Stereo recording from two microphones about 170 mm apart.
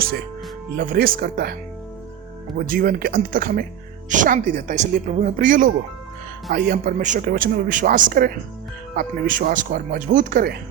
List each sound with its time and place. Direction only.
0.8 s speech: 60° right (ahead or behind)
2.6 s speech: 60° right (ahead or behind)